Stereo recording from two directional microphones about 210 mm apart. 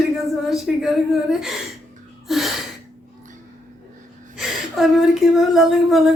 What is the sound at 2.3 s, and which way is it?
Gasp, centre (ahead or behind).